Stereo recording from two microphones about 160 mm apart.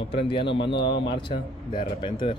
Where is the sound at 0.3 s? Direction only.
30° left (ahead or behind).